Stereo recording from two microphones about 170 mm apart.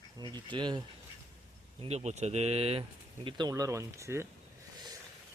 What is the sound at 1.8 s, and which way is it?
Speech, 40° right (ahead or behind).